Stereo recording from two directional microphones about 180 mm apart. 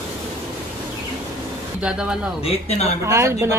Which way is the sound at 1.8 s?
5° right (ahead or behind).